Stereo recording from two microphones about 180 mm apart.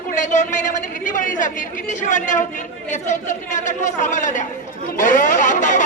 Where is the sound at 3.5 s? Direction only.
40° left (ahead or behind).